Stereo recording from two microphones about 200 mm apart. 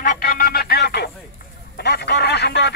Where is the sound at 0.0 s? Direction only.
45° left (ahead or behind).